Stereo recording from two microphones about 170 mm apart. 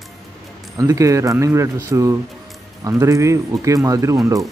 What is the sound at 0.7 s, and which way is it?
Speech, 20° right (ahead or behind).